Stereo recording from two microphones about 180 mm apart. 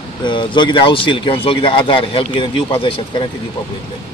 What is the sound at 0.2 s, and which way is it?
Speech, 25° left (ahead or behind).